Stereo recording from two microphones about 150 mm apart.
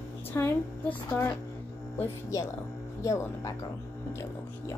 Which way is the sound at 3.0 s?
20° left (ahead or behind).